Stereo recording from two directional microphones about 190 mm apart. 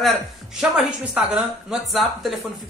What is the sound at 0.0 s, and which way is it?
Speech, centre (ahead or behind).